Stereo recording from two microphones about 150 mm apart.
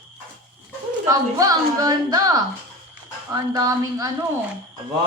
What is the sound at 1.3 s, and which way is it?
Speech, 25° right (ahead or behind).